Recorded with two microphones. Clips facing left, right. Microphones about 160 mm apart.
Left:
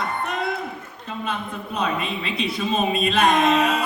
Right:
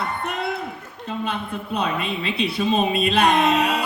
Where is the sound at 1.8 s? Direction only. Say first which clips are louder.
Left 1 dB; 30° right (ahead or behind).